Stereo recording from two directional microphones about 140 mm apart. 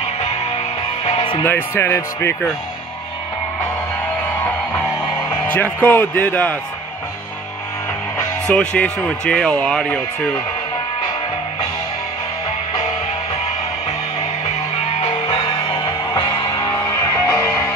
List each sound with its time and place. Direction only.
1.0 s music: 45° left (ahead or behind)
1.4 s speech: 15° left (ahead or behind)
4.4 s music: 15° left (ahead or behind)
5.0 s music: 30° left (ahead or behind)
5.5 s speech: 10° left (ahead or behind)
8.5 s speech: 5° left (ahead or behind)
15.0 s music: 45° left (ahead or behind)
16.2 s music: 25° left (ahead or behind)